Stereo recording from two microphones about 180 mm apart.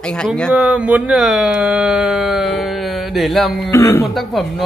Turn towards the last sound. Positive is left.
turn(degrees=15)  # may be behind; listen again after turning